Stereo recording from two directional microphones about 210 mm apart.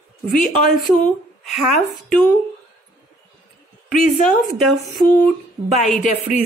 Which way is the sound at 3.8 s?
35° left (ahead or behind).